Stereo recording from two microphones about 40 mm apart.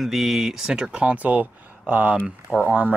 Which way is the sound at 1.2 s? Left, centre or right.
Right.